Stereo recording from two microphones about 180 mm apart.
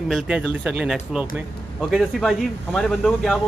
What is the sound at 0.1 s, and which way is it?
Speech, 5° right (ahead or behind).